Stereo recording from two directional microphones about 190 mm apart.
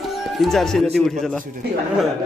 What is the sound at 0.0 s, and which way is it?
Speech, centre (ahead or behind).